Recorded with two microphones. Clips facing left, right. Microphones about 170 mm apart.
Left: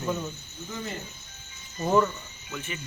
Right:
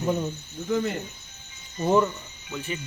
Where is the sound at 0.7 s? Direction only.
65° right (ahead or behind).